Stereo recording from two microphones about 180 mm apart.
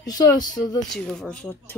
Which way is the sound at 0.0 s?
20° left (ahead or behind).